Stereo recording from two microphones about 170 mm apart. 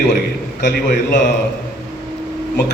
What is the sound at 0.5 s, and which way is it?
Speech, 80° left.